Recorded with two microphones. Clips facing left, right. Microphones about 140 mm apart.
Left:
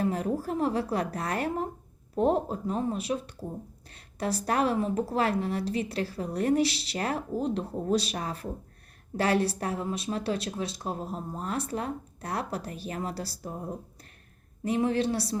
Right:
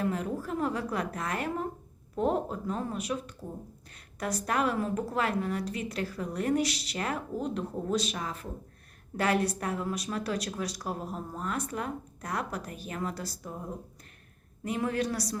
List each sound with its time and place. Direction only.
0.0 s a woman's voice: 35° left (ahead or behind)
14.6 s a woman's voice: 30° left (ahead or behind)